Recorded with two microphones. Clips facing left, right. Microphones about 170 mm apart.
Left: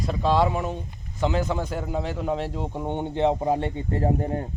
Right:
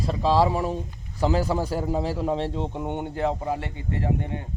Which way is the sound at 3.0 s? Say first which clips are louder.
Left 5 dB; 20° left (ahead or behind).